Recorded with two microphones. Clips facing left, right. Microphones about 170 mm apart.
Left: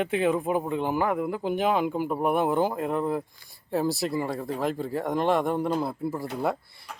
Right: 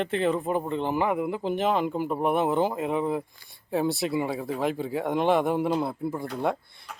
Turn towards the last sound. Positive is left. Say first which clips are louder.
# even
turn(degrees=0)  # may be behind; listen again after turning